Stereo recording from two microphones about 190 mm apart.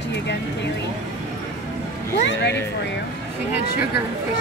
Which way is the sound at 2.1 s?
65° left (ahead or behind).